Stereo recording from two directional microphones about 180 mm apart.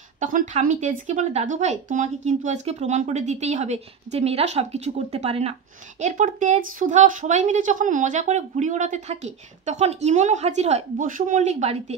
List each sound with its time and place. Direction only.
0.2 s speech: 45° right (ahead or behind)